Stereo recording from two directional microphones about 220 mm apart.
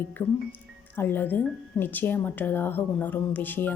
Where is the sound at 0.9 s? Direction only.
10° left (ahead or behind).